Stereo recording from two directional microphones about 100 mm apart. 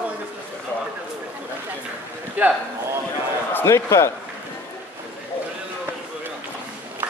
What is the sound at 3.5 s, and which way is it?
Speech, 25° left (ahead or behind).